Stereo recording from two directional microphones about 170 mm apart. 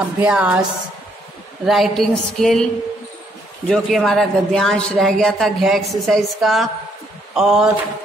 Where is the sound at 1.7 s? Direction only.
Centre (ahead or behind).